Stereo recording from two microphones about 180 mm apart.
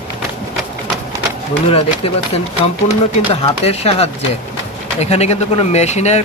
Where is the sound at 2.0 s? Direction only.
35° left (ahead or behind).